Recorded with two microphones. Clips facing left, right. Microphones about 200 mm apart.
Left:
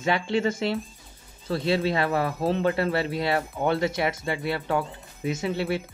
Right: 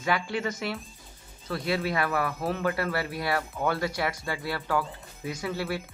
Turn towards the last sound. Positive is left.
turn(degrees=20)  # may be behind; listen again after turning